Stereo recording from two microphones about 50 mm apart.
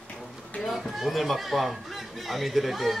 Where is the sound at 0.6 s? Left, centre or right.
Centre.